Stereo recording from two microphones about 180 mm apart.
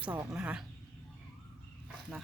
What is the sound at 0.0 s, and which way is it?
Speech, 10° right (ahead or behind).